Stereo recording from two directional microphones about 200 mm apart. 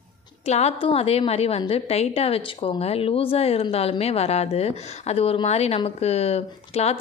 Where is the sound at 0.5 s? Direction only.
30° left (ahead or behind).